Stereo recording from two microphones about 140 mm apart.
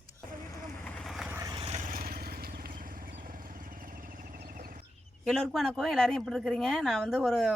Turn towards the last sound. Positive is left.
turn(degrees=0)  # may be behind; listen again after turning